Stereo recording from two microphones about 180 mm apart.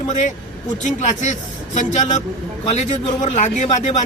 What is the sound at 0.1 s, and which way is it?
A man's voice, 45° left (ahead or behind).